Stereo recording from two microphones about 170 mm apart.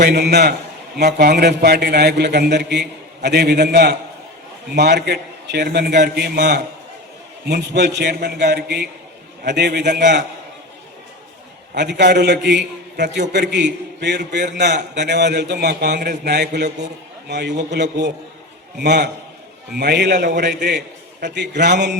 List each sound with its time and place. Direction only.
0.0 s a man's voice: 75° right (ahead or behind)
9.4 s a man's voice: 85° right
11.7 s a man's voice: 90° right
18.8 s a man's voice: 75° right (ahead or behind)